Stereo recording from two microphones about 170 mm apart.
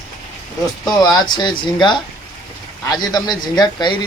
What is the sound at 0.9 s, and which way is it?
Speech, 25° left (ahead or behind).